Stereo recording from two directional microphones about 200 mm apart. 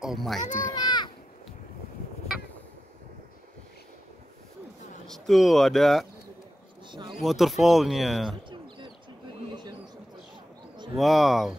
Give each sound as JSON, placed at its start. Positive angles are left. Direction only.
{"t": 0.0, "sound": "speech", "side_deg": 0}
{"t": 0.4, "sound": "a child's voice", "side_deg": 40}
{"t": 0.7, "sound": "children playing", "side_deg": 20}
{"t": 5.0, "sound": "speech", "side_deg": 0}
{"t": 6.9, "sound": "a sound", "side_deg": -25}
{"t": 7.2, "sound": "speech", "side_deg": 0}
{"t": 8.5, "sound": "bird", "side_deg": -25}
{"t": 11.0, "sound": "speech", "side_deg": 0}